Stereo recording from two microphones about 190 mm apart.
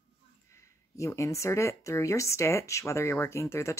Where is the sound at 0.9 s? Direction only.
15° left (ahead or behind).